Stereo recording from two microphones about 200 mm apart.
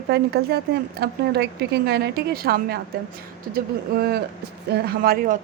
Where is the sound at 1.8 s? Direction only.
55° right (ahead or behind).